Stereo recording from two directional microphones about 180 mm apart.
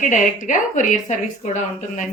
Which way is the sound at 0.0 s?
45° left (ahead or behind).